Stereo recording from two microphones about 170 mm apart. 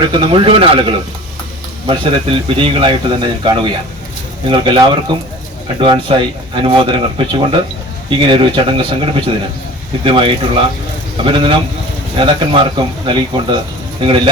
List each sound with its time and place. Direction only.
0.1 s speech: 30° right (ahead or behind)